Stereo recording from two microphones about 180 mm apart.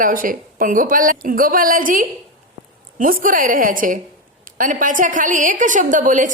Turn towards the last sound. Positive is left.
turn(degrees=-45)  # may be behind; listen again after turning